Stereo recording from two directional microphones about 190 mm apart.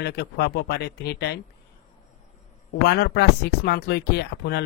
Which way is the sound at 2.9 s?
60° left (ahead or behind).